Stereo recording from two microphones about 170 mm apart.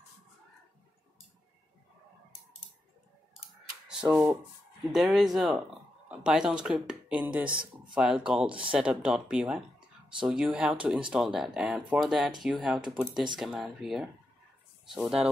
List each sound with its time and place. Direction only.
4.0 s speech: 10° right (ahead or behind)
7.4 s speech: 30° right (ahead or behind)
7.9 s speech: 5° right (ahead or behind)